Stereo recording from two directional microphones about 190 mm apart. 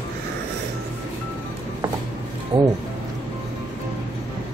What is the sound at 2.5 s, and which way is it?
Speech, 25° right (ahead or behind).